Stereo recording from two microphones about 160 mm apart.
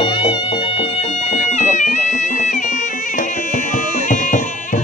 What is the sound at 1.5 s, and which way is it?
Music, 50° left (ahead or behind).